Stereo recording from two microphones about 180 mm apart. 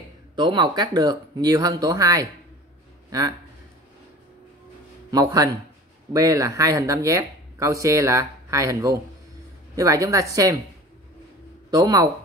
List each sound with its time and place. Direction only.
0.4 s a man's voice: 25° right (ahead or behind)
5.1 s speech: 20° right (ahead or behind)
11.7 s speech: 20° right (ahead or behind)